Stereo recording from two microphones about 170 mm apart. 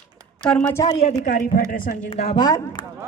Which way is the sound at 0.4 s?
5° left (ahead or behind).